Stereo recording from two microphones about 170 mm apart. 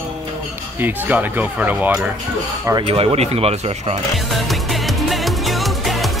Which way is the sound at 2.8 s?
35° right (ahead or behind).